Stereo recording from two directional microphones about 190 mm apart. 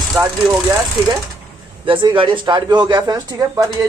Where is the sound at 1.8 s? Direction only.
25° right (ahead or behind).